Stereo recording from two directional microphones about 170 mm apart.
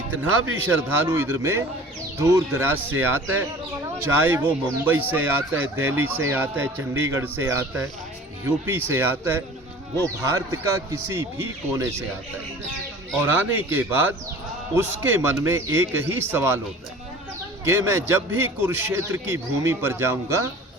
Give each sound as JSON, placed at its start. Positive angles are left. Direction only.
{"t": 0.7, "sound": "speech", "side_deg": -15}
{"t": 13.1, "sound": "speech", "side_deg": -10}
{"t": 17.7, "sound": "speech", "side_deg": -15}